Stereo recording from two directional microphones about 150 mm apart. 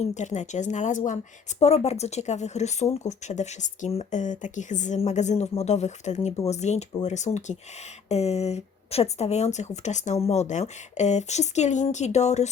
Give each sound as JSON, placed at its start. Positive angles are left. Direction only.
{"t": 0.0, "sound": "speech", "side_deg": 50}